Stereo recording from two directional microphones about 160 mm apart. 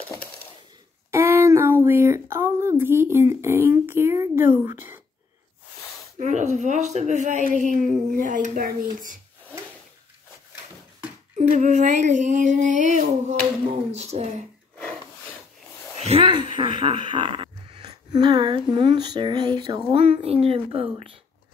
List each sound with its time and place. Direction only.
1.1 s speech: 15° right (ahead or behind)
6.1 s speech: 50° right (ahead or behind)
11.3 s speech: 50° right (ahead or behind)
16.0 s a sound: 40° right (ahead or behind)
17.8 s speech: 25° right (ahead or behind)
19.9 s a woman's voice: 40° right (ahead or behind)